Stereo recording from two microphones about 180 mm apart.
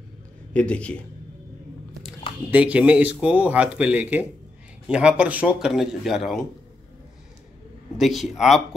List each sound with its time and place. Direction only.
0.5 s a man's voice: 5° left (ahead or behind)
2.5 s speech: 5° right (ahead or behind)
8.0 s speech: centre (ahead or behind)